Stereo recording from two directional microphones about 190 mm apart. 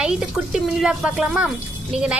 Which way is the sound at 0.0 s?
5° right (ahead or behind).